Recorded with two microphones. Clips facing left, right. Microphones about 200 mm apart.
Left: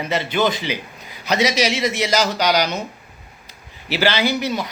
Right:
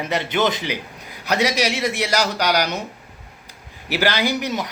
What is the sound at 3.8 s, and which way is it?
Speech, 15° right (ahead or behind).